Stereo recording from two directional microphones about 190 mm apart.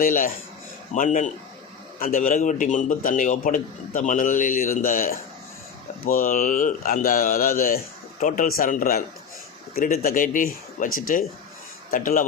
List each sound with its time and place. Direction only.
0.0 s a man's voice: 45° left (ahead or behind)